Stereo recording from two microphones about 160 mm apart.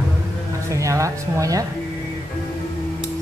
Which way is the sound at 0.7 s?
20° right (ahead or behind).